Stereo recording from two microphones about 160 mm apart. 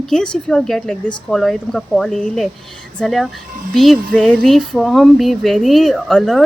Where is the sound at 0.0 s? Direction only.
5° left (ahead or behind).